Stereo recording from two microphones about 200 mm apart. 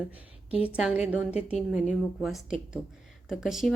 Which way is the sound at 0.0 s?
5° right (ahead or behind).